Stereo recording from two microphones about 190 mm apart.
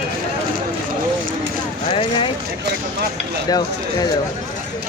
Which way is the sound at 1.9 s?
30° left (ahead or behind).